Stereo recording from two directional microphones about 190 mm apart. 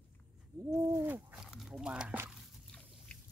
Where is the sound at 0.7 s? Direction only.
10° right (ahead or behind).